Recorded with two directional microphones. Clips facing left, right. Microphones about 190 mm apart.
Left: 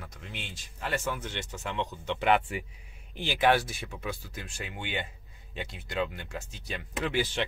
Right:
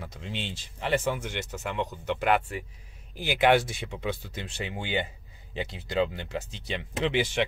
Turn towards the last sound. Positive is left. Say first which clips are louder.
# right 3 dB
turn(degrees=-20)  # may be behind; listen again after turning